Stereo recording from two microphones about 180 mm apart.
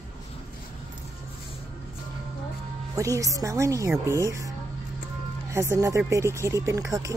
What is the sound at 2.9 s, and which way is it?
Speech, 15° right (ahead or behind).